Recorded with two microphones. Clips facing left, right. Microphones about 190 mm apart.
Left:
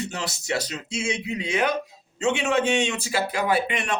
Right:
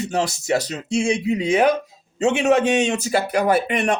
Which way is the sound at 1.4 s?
45° right (ahead or behind).